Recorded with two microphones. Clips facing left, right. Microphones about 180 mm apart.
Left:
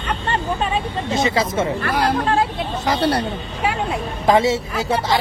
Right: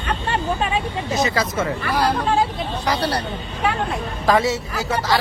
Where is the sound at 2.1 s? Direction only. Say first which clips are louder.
Left 2 dB; centre (ahead or behind).